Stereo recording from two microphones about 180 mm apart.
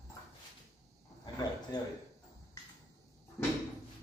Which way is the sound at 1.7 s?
20° left (ahead or behind).